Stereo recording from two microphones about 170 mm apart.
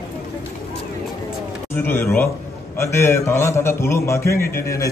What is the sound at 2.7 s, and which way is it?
A man's voice, 15° left (ahead or behind).